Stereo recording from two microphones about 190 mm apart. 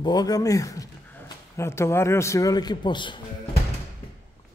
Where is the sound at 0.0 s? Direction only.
20° left (ahead or behind).